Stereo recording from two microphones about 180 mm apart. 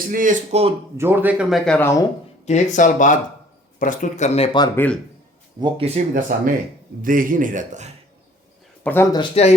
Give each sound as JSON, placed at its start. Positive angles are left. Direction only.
{"t": 0.1, "sound": "speech", "side_deg": -45}
{"t": 0.9, "sound": "speech", "side_deg": -10}
{"t": 2.5, "sound": "speech", "side_deg": 45}
{"t": 4.7, "sound": "speech", "side_deg": 10}
{"t": 5.5, "sound": "speech", "side_deg": -25}
{"t": 6.1, "sound": "speech", "side_deg": -45}
{"t": 8.8, "sound": "speech", "side_deg": 10}
{"t": 9.1, "sound": "speech", "side_deg": 35}